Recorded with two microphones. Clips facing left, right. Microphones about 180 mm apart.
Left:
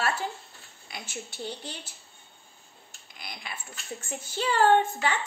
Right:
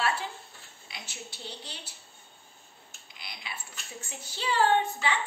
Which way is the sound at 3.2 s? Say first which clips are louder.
Left 3 dB; 50° left (ahead or behind).